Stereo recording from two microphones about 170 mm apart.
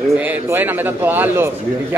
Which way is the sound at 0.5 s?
10° right (ahead or behind).